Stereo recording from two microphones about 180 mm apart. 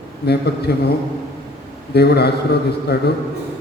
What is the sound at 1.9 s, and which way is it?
A man's voice, 65° left (ahead or behind).